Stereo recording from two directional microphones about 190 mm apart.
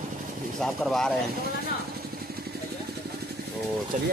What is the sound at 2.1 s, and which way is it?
Vehicle, 55° right (ahead or behind).